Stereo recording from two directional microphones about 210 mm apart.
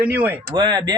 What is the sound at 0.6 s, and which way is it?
Speech, 20° right (ahead or behind).